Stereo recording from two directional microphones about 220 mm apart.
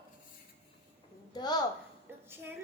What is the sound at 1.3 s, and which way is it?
Speech, 20° left (ahead or behind).